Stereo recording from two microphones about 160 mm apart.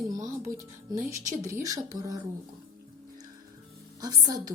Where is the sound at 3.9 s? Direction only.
25° right (ahead or behind).